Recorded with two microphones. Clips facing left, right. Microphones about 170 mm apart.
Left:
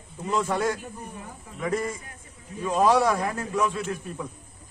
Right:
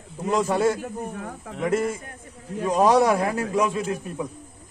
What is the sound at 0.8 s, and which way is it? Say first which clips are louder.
Speech: right 7 dB; 85° right.